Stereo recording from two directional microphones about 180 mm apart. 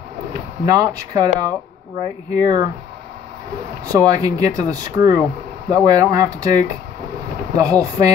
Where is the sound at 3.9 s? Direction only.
20° right (ahead or behind).